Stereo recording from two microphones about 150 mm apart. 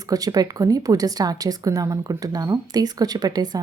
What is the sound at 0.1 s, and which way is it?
A woman's voice, 25° right (ahead or behind).